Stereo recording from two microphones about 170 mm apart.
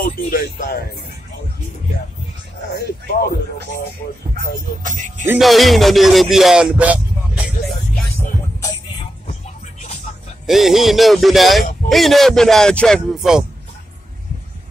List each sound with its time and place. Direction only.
0.0 s speech: 60° left (ahead or behind)
2.7 s speech: 65° left (ahead or behind)
4.8 s speech: 50° right (ahead or behind)
5.4 s speech: centre (ahead or behind)
10.4 s speech: centre (ahead or behind)